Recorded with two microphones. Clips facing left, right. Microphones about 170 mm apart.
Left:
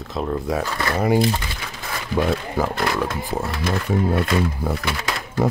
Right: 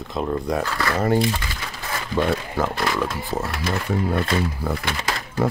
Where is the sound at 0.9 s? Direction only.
10° left (ahead or behind).